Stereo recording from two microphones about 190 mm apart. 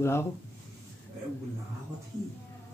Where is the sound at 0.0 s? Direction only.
15° left (ahead or behind).